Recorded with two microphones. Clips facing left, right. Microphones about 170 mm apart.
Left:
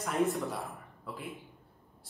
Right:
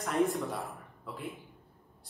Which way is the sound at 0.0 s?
Centre (ahead or behind).